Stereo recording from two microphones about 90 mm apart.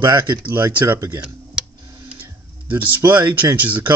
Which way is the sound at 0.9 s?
35° right (ahead or behind).